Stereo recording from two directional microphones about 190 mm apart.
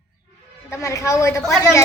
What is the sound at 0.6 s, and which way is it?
Speech, 15° left (ahead or behind).